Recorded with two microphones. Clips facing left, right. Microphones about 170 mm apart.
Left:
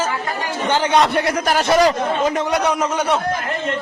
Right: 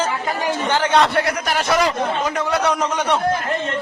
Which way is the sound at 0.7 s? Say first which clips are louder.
Left 2 dB; 15° left (ahead or behind).